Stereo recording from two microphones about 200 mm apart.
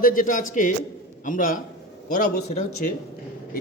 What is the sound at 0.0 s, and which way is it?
Speech, 40° left (ahead or behind).